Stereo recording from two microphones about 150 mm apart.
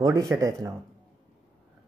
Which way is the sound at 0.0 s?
20° right (ahead or behind).